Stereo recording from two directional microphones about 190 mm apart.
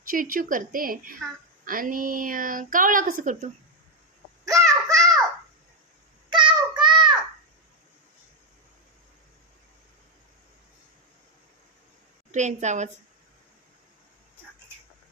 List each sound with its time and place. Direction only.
0.1 s a woman's voice: 45° right (ahead or behind)
4.4 s a sound: 15° right (ahead or behind)
6.3 s child singing: 25° right (ahead or behind)
12.3 s a woman's voice: 40° right (ahead or behind)